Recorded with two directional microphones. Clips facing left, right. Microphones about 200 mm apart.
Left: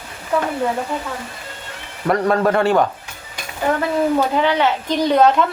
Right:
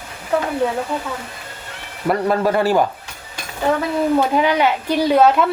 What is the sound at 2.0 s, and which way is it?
Speech, 5° right (ahead or behind).